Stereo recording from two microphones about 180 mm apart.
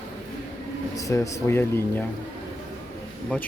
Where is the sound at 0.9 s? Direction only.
15° left (ahead or behind).